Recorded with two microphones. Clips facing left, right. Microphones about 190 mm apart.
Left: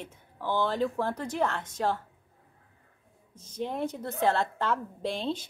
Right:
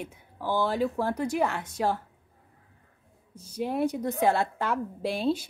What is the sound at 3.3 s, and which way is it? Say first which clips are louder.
A woman's voice: right 4 dB; 10° right (ahead or behind).